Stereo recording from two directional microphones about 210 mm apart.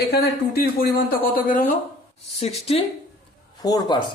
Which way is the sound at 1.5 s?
40° left (ahead or behind).